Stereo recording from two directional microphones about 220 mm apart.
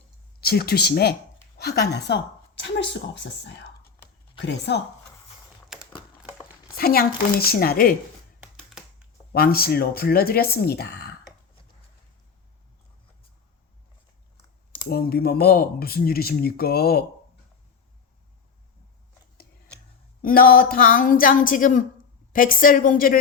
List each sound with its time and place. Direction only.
0.4 s a woman's voice: 45° left (ahead or behind)
5.6 s a sound: centre (ahead or behind)
6.7 s a woman's voice: 45° left (ahead or behind)
9.3 s a woman's voice: 45° left (ahead or behind)
14.8 s a woman's voice: 45° left (ahead or behind)
20.2 s a woman's voice: 40° left (ahead or behind)